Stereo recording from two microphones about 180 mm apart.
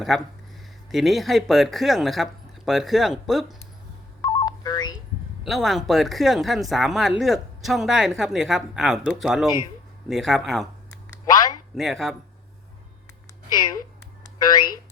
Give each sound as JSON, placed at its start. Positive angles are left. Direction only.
{"t": 0.0, "sound": "speech", "side_deg": 0}
{"t": 4.2, "sound": "telephone dialing", "side_deg": 20}
{"t": 5.4, "sound": "speech", "side_deg": 0}
{"t": 11.7, "sound": "speech", "side_deg": 0}
{"t": 13.5, "sound": "speech", "side_deg": 20}